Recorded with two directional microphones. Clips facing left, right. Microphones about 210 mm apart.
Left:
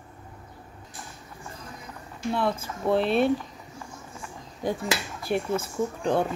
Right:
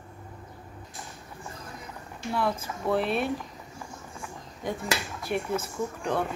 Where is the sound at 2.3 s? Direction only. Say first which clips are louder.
Left 1 dB; 25° left (ahead or behind).